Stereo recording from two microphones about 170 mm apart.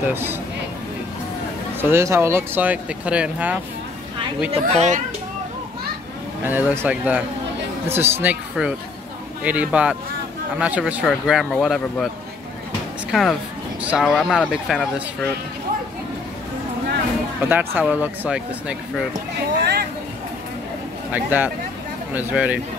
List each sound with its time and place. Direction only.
0.0 s speech: 15° right (ahead or behind)
1.8 s speech: 15° right (ahead or behind)
4.5 s speech: 40° right (ahead or behind)
6.4 s speech: 10° right (ahead or behind)
13.1 s speech: centre (ahead or behind)
17.5 s speech: 10° right (ahead or behind)
19.6 s speech: 70° right (ahead or behind)
21.1 s speech: 10° right (ahead or behind)